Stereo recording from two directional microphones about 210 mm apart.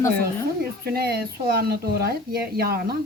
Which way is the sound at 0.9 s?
50° right (ahead or behind).